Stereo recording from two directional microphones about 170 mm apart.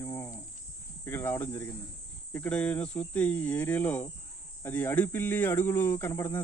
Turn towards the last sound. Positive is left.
turn(degrees=15)  # may be behind; listen again after turning